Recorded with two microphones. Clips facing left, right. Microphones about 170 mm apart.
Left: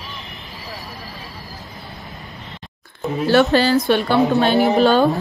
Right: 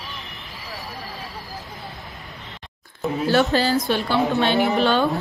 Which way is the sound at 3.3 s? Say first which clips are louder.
Left 5 dB; 70° left (ahead or behind).